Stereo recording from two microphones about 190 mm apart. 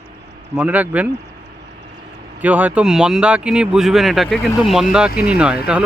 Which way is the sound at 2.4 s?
10° right (ahead or behind).